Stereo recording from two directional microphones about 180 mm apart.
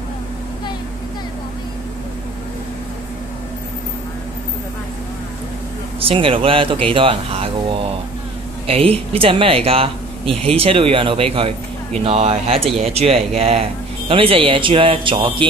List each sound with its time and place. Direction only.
5.9 s speech: 30° right (ahead or behind)